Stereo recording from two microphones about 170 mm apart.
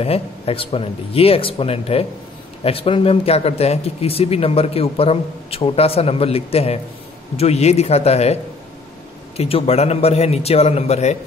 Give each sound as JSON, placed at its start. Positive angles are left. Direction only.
{"t": 0.0, "sound": "speech", "side_deg": 35}
{"t": 9.4, "sound": "speech", "side_deg": 35}